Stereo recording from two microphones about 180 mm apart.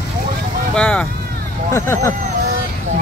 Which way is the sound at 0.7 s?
5° left (ahead or behind).